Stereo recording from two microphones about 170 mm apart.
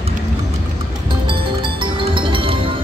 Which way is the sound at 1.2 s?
30° right (ahead or behind).